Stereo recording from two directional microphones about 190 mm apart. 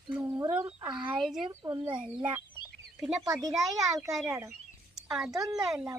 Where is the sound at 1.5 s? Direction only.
20° right (ahead or behind).